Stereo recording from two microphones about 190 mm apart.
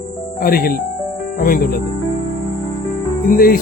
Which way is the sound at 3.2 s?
50° left (ahead or behind).